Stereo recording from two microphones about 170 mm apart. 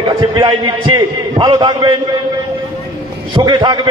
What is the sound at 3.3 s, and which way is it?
Speech, 25° right (ahead or behind).